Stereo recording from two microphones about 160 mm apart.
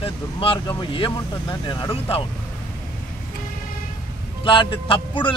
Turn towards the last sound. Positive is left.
turn(degrees=30)  # may be behind; listen again after turning